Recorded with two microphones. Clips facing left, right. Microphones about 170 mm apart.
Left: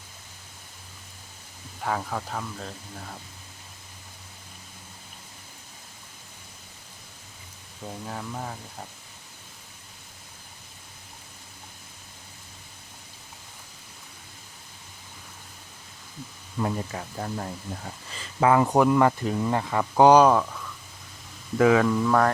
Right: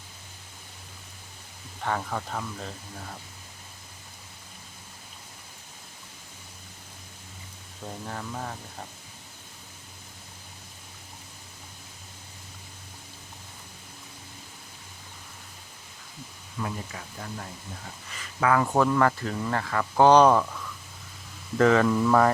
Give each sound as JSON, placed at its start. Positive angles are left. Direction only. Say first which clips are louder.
{"t": 1.8, "sound": "speech", "louder": "left 1 dB", "side_deg": 5}
{"t": 8.0, "sound": "speech", "louder": "left 1 dB", "side_deg": 5}
{"t": 16.6, "sound": "speech", "louder": "left 6 dB", "side_deg": 35}
{"t": 18.1, "sound": "speech", "louder": "left 3 dB", "side_deg": 25}
{"t": 21.6, "sound": "speech", "louder": "left 1 dB", "side_deg": 5}